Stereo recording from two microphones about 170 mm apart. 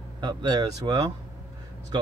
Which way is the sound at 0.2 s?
25° right (ahead or behind).